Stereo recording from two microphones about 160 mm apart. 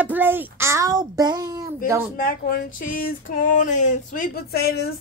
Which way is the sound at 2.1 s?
65° left (ahead or behind).